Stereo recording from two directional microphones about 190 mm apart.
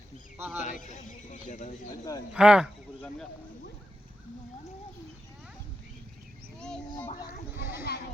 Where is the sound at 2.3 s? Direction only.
5° right (ahead or behind).